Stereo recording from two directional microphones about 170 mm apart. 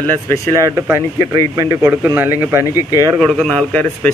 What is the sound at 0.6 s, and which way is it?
Speech, 15° right (ahead or behind).